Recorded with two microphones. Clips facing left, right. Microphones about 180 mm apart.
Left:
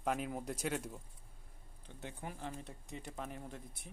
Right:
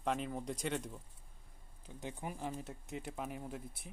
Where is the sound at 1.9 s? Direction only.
15° right (ahead or behind).